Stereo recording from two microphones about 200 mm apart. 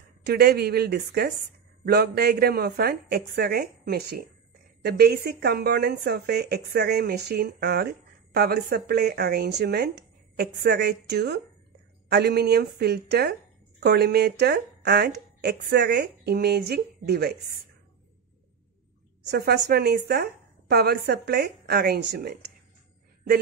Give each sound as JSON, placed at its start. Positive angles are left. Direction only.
{"t": 0.2, "sound": "a woman's voice", "side_deg": -55}
{"t": 19.2, "sound": "a woman's voice", "side_deg": -55}